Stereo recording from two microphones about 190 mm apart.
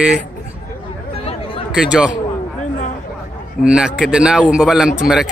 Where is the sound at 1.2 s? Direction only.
30° left (ahead or behind).